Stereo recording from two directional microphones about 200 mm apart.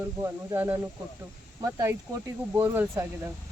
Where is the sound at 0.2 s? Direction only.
10° right (ahead or behind).